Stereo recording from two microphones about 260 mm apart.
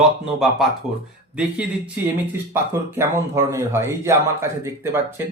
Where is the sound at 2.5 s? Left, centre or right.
Centre.